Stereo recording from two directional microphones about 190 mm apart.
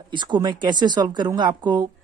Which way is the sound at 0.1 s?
25° right (ahead or behind).